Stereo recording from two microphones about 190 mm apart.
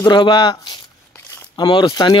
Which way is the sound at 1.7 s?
25° left (ahead or behind).